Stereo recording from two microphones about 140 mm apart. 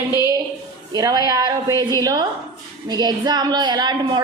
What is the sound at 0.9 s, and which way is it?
A woman's voice, 30° right (ahead or behind).